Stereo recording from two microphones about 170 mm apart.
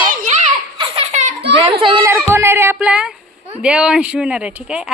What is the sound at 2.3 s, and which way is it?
A woman's voice, 15° right (ahead or behind).